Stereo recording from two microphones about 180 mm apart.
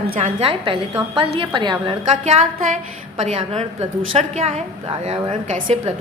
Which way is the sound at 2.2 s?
40° right (ahead or behind).